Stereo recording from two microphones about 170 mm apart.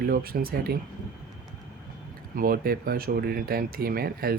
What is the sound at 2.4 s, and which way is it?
Speech, 60° right (ahead or behind).